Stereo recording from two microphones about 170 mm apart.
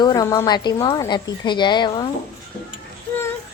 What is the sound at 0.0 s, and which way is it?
A woman's voice, 20° left (ahead or behind).